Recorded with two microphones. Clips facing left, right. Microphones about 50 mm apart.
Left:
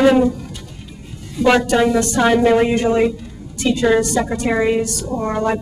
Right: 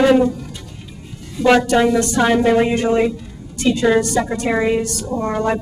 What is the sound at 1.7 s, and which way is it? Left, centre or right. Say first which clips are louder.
A woman's voice: even; centre.